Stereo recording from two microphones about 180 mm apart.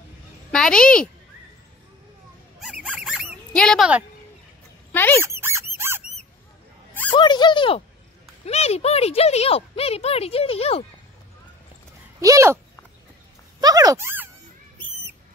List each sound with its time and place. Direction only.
0.5 s a woman's voice: 5° left (ahead or behind)
2.6 s a sound: 5° right (ahead or behind)
4.9 s speech: 10° left (ahead or behind)
5.4 s squeak: 15° right (ahead or behind)
5.8 s a sound: 15° right (ahead or behind)
6.9 s a sound: 10° left (ahead or behind)
7.2 s speech: 25° left (ahead or behind)
12.2 s speech: 15° right (ahead or behind)
13.6 s speech: 20° right (ahead or behind)